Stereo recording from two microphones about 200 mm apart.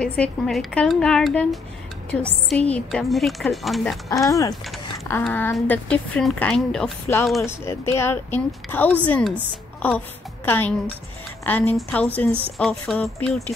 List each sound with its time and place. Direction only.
0.0 s a woman's voice: 5° left (ahead or behind)
4.1 s a woman's voice: 15° left (ahead or behind)
7.4 s a woman's voice: 15° left (ahead or behind)
12.3 s speech: 25° right (ahead or behind)
12.5 s a woman's voice: centre (ahead or behind)